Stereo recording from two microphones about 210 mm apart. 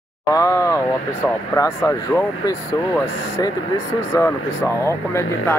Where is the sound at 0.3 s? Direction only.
15° left (ahead or behind).